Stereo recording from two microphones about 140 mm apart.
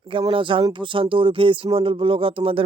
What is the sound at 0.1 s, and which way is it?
Speech, 40° right (ahead or behind).